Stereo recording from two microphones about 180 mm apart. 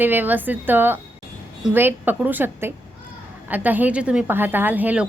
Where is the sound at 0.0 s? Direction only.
10° right (ahead or behind).